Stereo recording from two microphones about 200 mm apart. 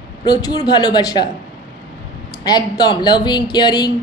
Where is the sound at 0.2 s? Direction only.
20° left (ahead or behind).